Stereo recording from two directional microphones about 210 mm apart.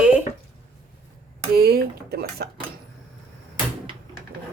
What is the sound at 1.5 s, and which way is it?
Speech, 45° right (ahead or behind).